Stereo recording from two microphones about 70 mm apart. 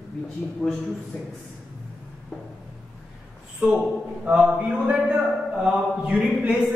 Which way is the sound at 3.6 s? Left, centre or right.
Centre.